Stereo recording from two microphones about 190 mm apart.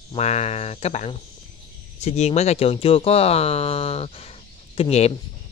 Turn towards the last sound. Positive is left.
turn(degrees=35)  # may be behind; listen again after turning